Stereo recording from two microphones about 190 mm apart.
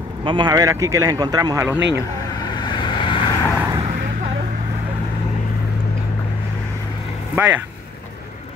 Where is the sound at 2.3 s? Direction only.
20° left (ahead or behind).